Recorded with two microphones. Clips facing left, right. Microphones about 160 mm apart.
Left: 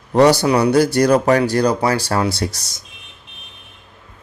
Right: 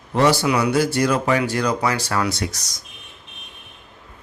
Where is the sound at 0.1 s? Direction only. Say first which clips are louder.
Left 5 dB; 40° left (ahead or behind).